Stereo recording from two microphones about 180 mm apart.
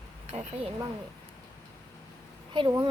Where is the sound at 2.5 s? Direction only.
25° right (ahead or behind).